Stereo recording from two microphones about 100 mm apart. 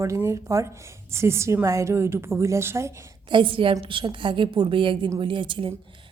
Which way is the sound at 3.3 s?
60° right (ahead or behind).